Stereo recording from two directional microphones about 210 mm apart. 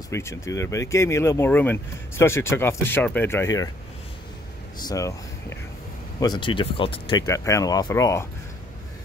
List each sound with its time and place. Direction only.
0.1 s speech: 15° left (ahead or behind)
4.8 s speech: 15° left (ahead or behind)